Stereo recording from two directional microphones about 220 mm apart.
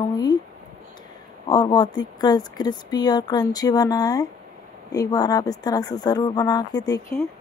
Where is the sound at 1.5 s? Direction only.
20° left (ahead or behind).